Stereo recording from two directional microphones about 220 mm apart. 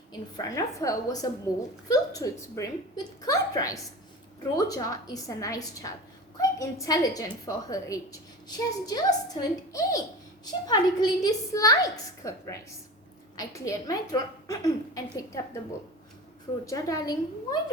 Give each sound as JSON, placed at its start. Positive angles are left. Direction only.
{"t": 0.1, "sound": "a woman's voice", "side_deg": 15}
{"t": 16.6, "sound": "a woman's voice", "side_deg": 15}